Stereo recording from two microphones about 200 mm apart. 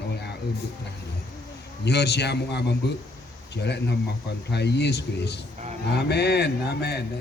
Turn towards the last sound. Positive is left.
turn(degrees=55)  # may be behind; listen again after turning